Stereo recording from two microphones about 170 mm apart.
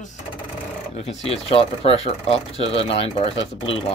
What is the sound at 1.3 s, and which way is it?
Speech, 35° left (ahead or behind).